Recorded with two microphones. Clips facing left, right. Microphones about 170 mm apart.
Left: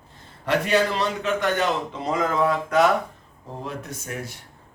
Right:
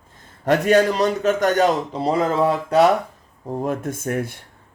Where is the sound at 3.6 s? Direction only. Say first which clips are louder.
Right 9 dB; 50° right (ahead or behind).